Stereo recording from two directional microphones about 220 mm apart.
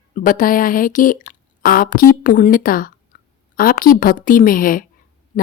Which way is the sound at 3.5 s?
40° left (ahead or behind).